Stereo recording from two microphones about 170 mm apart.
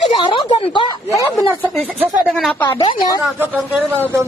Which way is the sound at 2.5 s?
20° left (ahead or behind).